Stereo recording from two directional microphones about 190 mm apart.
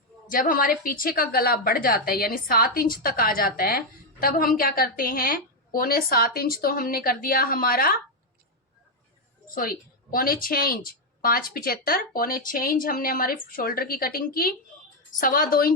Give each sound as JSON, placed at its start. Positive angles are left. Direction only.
{"t": 0.3, "sound": "a woman's voice", "side_deg": 45}
{"t": 9.6, "sound": "a woman's voice", "side_deg": 50}